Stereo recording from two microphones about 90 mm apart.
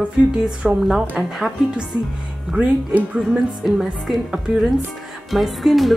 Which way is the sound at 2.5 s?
15° right (ahead or behind).